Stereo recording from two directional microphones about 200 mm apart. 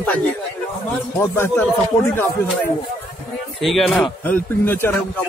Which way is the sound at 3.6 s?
Centre (ahead or behind).